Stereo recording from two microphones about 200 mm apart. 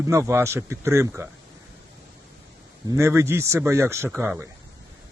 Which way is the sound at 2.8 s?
15° right (ahead or behind).